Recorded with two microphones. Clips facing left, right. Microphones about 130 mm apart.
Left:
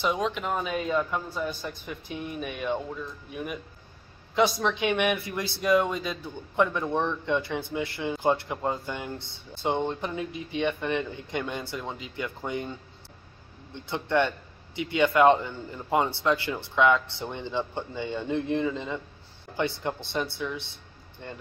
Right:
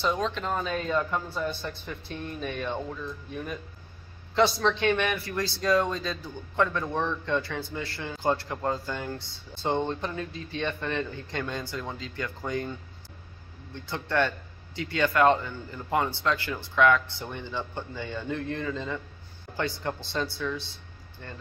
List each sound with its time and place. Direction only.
0.0 s speech: 15° left (ahead or behind)
4.6 s speech: 10° left (ahead or behind)
13.7 s speech: 20° left (ahead or behind)